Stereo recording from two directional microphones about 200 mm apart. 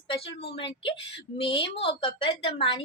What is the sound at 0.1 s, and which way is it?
A woman's voice, 25° left (ahead or behind).